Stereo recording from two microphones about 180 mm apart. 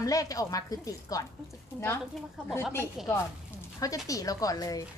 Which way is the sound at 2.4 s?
5° left (ahead or behind).